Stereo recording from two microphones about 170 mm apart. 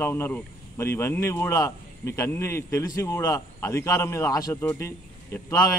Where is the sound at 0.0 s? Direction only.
10° left (ahead or behind).